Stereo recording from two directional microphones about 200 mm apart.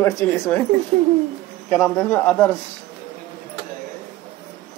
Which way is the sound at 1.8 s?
5° left (ahead or behind).